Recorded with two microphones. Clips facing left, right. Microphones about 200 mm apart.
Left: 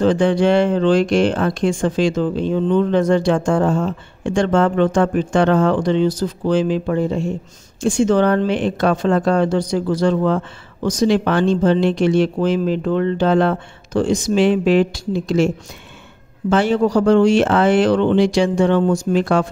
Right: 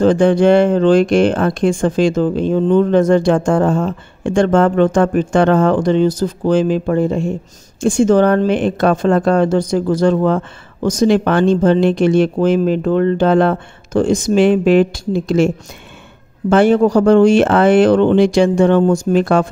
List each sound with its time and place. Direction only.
0.0 s speech: 50° right (ahead or behind)